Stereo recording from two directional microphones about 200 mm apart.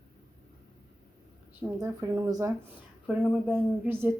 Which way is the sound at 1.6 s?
15° right (ahead or behind).